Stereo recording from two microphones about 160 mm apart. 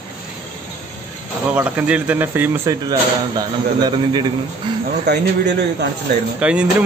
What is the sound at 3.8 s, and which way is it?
Speech, 25° right (ahead or behind).